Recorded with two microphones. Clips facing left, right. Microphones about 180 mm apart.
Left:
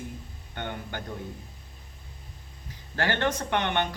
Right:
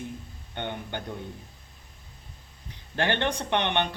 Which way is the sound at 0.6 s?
20° right (ahead or behind).